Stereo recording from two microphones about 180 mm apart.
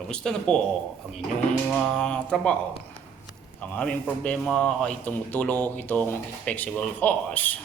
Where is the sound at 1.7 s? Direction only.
Centre (ahead or behind).